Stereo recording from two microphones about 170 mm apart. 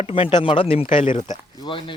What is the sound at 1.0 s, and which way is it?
Speech, 45° left (ahead or behind).